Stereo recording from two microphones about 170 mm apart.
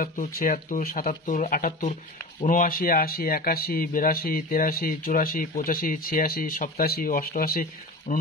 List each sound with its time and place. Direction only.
0.0 s speech: 60° left (ahead or behind)